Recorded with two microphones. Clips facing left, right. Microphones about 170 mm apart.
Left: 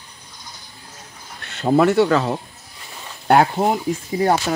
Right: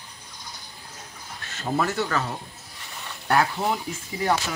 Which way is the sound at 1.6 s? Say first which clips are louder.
Left 11 dB; 55° left (ahead or behind).